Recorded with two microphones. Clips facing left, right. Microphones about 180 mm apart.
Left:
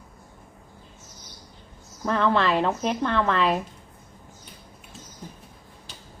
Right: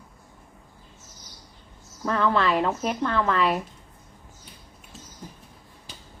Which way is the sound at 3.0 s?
25° left (ahead or behind).